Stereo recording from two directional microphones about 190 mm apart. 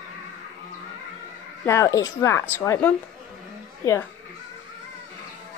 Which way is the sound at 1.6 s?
15° left (ahead or behind).